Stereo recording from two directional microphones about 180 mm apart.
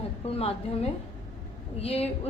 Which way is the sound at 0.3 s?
35° left (ahead or behind).